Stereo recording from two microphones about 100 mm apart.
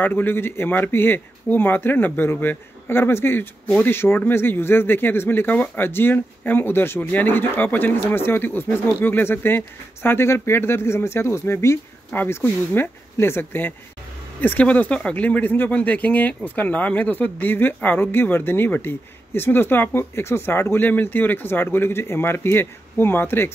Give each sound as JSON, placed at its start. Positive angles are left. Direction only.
{"t": 0.0, "sound": "speech", "side_deg": 20}
{"t": 3.6, "sound": "speech", "side_deg": 10}
{"t": 4.3, "sound": "speech", "side_deg": 25}